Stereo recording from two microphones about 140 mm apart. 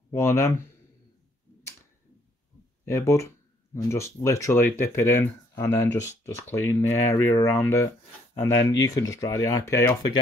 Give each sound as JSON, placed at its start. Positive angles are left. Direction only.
{"t": 0.1, "sound": "speech", "side_deg": 20}
{"t": 2.8, "sound": "speech", "side_deg": 20}